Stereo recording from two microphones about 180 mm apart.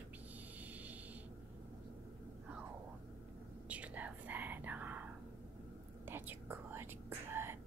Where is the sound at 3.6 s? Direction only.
5° right (ahead or behind).